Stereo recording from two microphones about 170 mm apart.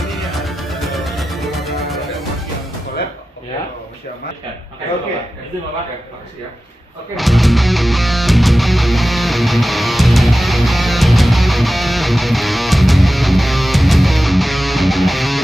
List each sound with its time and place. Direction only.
0.2 s music: centre (ahead or behind)
7.2 s music: centre (ahead or behind)